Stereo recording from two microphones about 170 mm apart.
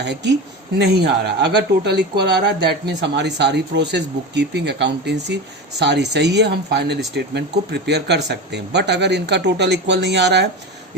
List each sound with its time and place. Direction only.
0.0 s speech: 90° right
0.8 s speech: 75° right (ahead or behind)